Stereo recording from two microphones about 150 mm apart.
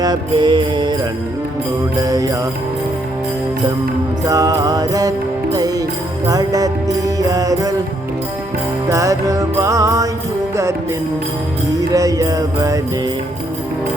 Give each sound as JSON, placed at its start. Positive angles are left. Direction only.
{"t": 0.0, "sound": "music", "side_deg": -30}
{"t": 2.0, "sound": "music", "side_deg": -25}
{"t": 4.3, "sound": "music", "side_deg": -25}
{"t": 8.9, "sound": "music", "side_deg": -20}
{"t": 11.8, "sound": "music", "side_deg": -25}